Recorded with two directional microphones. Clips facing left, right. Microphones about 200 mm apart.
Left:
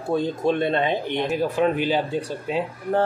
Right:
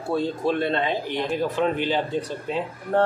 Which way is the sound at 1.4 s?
10° left (ahead or behind).